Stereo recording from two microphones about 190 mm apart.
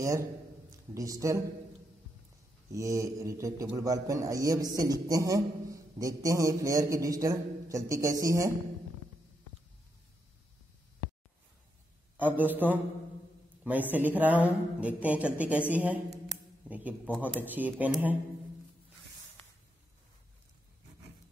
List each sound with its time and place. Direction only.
0.7 s a man's voice: 15° right (ahead or behind)
2.7 s a man's voice: 15° right (ahead or behind)
12.2 s a man's voice: 10° right (ahead or behind)